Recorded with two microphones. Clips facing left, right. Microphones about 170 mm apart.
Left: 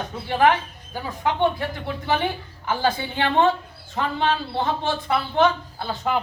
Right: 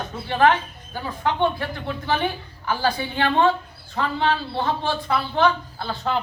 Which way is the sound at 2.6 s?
20° left (ahead or behind).